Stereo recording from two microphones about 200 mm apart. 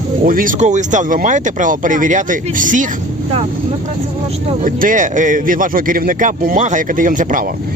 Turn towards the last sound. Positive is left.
turn(degrees=-40)  # may be behind; listen again after turning